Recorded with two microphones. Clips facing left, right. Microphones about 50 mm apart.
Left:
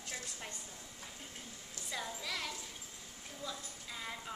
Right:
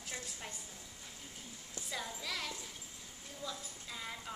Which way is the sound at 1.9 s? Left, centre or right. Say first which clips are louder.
Left 1 dB; centre.